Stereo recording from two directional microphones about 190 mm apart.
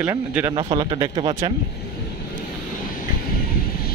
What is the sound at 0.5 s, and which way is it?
Speech, 25° right (ahead or behind).